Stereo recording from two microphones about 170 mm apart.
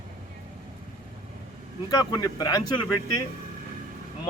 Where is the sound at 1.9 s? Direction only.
20° left (ahead or behind).